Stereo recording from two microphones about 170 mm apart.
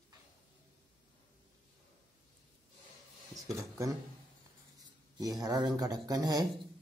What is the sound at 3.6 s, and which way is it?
Speech, 20° right (ahead or behind).